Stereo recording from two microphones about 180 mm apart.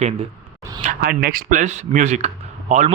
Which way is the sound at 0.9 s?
55° right (ahead or behind).